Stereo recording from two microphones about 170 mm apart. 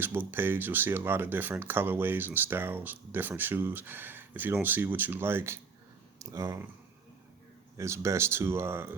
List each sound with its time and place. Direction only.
0.0 s speech: 15° right (ahead or behind)
7.8 s speech: 15° right (ahead or behind)